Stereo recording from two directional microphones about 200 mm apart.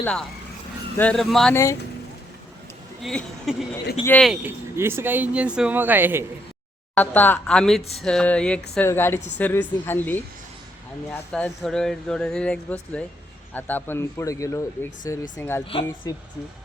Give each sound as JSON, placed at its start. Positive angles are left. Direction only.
{"t": 0.0, "sound": "speech", "side_deg": 5}
{"t": 3.0, "sound": "speech", "side_deg": 0}
{"t": 4.3, "sound": "speech", "side_deg": -10}
{"t": 6.9, "sound": "speech", "side_deg": 10}
{"t": 15.7, "sound": "speech", "side_deg": 25}